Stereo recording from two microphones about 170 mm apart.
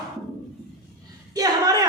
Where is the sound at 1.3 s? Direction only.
20° right (ahead or behind).